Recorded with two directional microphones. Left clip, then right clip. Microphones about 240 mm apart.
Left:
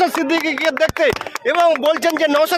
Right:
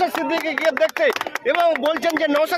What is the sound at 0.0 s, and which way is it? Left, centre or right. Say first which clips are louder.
Speech: left 4 dB; left.